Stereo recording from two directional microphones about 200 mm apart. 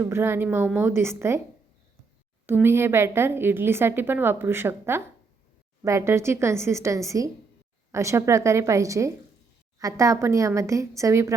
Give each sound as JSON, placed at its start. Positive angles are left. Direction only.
{"t": 0.0, "sound": "a woman's voice", "side_deg": -10}
{"t": 2.5, "sound": "a woman's voice", "side_deg": -10}